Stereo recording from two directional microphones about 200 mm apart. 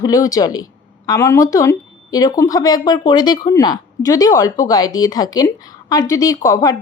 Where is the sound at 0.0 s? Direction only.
15° left (ahead or behind).